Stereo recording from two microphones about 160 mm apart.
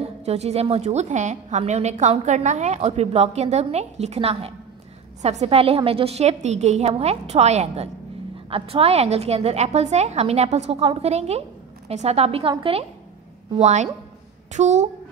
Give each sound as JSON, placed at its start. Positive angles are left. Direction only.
{"t": 0.0, "sound": "a woman's voice", "side_deg": -40}